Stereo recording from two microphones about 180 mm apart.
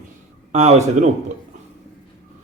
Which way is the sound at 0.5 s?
40° right (ahead or behind).